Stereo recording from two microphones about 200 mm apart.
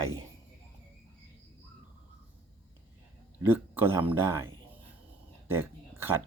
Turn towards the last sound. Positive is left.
turn(degrees=-10)  # may be behind; listen again after turning